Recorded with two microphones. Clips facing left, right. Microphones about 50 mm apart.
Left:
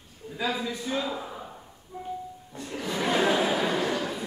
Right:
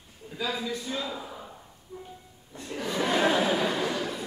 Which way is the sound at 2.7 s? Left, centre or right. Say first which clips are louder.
Even; centre.